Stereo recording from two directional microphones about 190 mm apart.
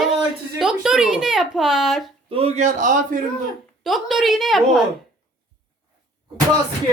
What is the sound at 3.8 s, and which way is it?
Speech, centre (ahead or behind).